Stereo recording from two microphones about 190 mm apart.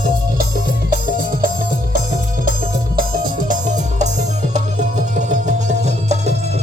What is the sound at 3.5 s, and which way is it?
Music, 40° right (ahead or behind).